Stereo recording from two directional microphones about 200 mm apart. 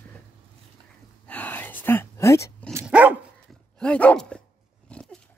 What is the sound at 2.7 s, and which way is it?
Dog, 10° right (ahead or behind).